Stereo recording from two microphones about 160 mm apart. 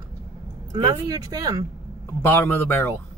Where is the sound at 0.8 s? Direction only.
25° right (ahead or behind).